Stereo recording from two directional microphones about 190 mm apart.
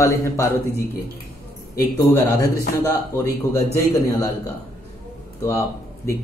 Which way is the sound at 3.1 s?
15° left (ahead or behind).